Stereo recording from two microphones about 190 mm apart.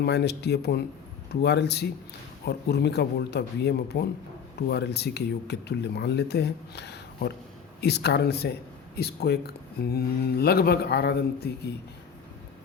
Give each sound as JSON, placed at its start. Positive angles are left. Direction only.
{"t": 0.0, "sound": "speech", "side_deg": 60}